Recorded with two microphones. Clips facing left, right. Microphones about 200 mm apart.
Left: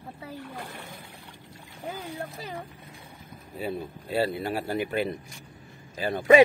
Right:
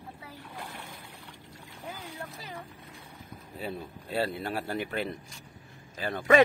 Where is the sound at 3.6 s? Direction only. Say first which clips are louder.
Left 5 dB; 5° left (ahead or behind).